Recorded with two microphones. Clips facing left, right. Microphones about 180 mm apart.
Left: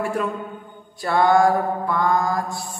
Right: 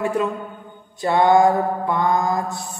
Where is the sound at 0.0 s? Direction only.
20° right (ahead or behind).